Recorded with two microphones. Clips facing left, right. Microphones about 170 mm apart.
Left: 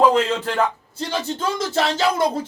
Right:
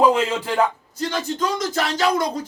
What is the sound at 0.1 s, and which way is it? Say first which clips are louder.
Speech: left 1 dB; 10° right (ahead or behind).